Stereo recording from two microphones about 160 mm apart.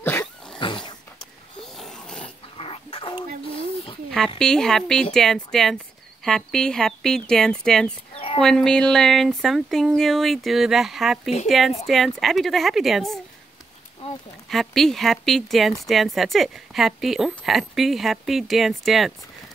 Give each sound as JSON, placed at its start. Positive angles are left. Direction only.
{"t": 0.0, "sound": "dog", "side_deg": 15}
{"t": 0.6, "sound": "roaring cats", "side_deg": 30}
{"t": 1.6, "sound": "snoring", "side_deg": 0}
{"t": 2.5, "sound": "dog", "side_deg": 35}
{"t": 4.4, "sound": "speech", "side_deg": 5}
{"t": 8.1, "sound": "a sound", "side_deg": 35}
{"t": 8.4, "sound": "speech", "side_deg": 5}
{"t": 14.5, "sound": "speech", "side_deg": 0}